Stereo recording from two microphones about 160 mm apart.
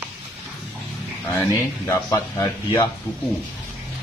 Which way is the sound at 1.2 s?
15° left (ahead or behind).